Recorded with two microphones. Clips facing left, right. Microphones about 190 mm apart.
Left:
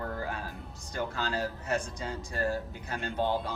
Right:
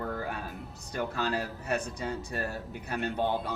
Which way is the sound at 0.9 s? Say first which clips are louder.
Right 2 dB; 60° right (ahead or behind).